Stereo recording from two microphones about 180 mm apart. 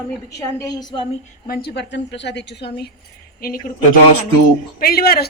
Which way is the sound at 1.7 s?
75° left (ahead or behind).